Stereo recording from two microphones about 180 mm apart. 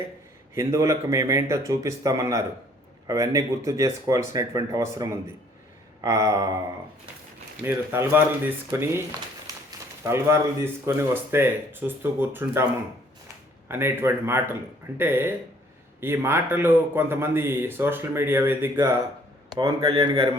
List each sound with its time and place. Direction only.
0.5 s a man's voice: 15° right (ahead or behind)
7.6 s a man's voice: 10° right (ahead or behind)
13.7 s a man's voice: 15° right (ahead or behind)
19.5 s speech: 25° right (ahead or behind)